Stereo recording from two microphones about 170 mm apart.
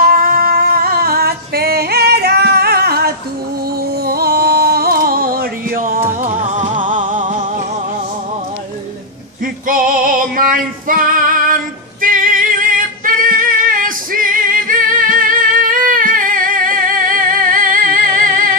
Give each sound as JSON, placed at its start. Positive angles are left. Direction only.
{"t": 0.0, "sound": "singing", "side_deg": -60}
{"t": 4.0, "sound": "music", "side_deg": -65}
{"t": 5.9, "sound": "music", "side_deg": -15}
{"t": 7.2, "sound": "music", "side_deg": -30}
{"t": 9.7, "sound": "music", "side_deg": -55}